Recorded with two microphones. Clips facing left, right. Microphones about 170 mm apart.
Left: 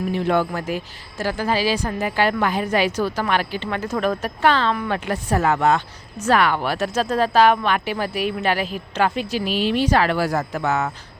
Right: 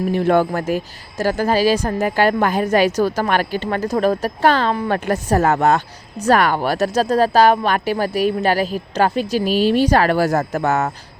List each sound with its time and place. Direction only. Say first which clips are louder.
0.1 s a woman's voice: right 5 dB; 50° right (ahead or behind)